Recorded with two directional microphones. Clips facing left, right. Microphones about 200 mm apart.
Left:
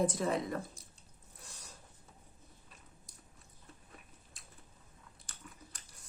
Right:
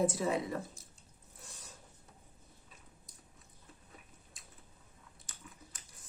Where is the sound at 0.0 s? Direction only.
5° right (ahead or behind).